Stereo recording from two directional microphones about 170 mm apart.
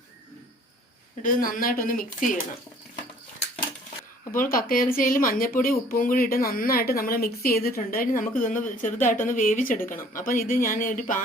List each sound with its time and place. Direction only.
1.2 s speech: 55° left (ahead or behind)
4.3 s speech: 55° left (ahead or behind)